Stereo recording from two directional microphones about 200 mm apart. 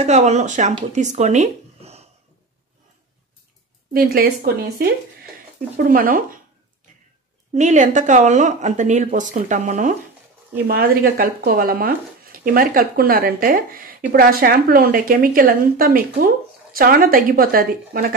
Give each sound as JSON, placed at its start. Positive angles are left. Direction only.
{"t": 0.0, "sound": "speech", "side_deg": -35}
{"t": 3.9, "sound": "speech", "side_deg": -50}
{"t": 7.5, "sound": "speech", "side_deg": -35}